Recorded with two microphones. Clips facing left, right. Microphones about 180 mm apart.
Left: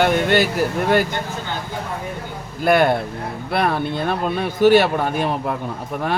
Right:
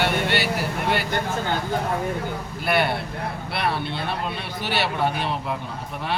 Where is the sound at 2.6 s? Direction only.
45° left (ahead or behind).